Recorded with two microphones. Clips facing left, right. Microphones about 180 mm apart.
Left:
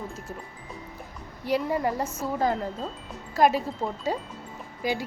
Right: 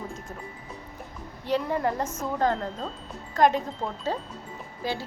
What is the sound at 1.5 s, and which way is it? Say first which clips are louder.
A woman's voice: even; 10° left (ahead or behind).